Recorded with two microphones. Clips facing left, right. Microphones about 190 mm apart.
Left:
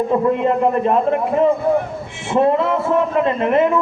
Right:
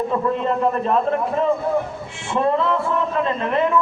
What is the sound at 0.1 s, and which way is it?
Speech, 10° left (ahead or behind).